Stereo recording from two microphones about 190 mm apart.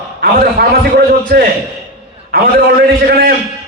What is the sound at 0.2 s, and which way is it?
Speech, 50° right (ahead or behind).